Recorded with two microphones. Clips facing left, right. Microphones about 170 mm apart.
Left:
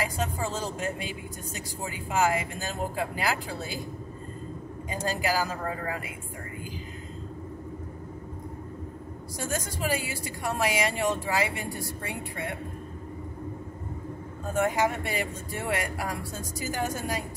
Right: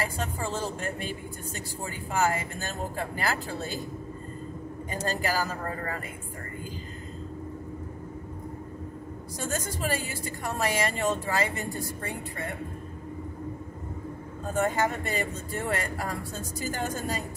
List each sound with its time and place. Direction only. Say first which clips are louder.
0.7 s a woman's voice: left 1 dB; 10° left (ahead or behind)
4.9 s a woman's voice: left 1 dB; 10° left (ahead or behind)
9.4 s a woman's voice: even; 10° left (ahead or behind)
14.5 s a woman's voice: left 1 dB; 10° left (ahead or behind)